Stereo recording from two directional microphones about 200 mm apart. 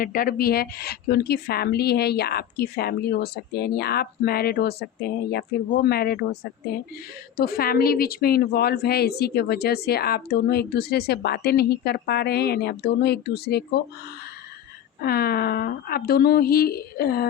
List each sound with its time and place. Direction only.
0.0 s a woman's voice: 45° left (ahead or behind)
15.0 s a woman's voice: 50° left (ahead or behind)